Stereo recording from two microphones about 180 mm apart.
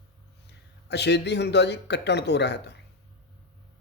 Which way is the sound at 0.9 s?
70° left (ahead or behind).